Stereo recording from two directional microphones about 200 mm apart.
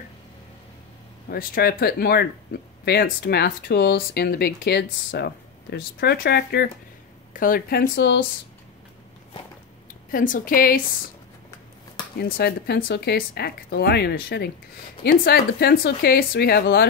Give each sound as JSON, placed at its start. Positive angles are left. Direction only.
{"t": 1.3, "sound": "speech", "side_deg": 50}
{"t": 10.1, "sound": "speech", "side_deg": 45}
{"t": 12.2, "sound": "speech", "side_deg": 50}